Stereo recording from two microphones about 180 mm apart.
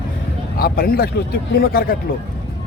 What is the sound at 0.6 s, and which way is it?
Speech, 55° left (ahead or behind).